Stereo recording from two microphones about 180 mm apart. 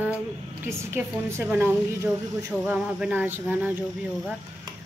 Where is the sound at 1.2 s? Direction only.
15° right (ahead or behind).